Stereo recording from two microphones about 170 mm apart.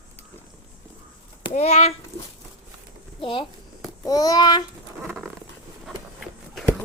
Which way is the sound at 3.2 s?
30° left (ahead or behind).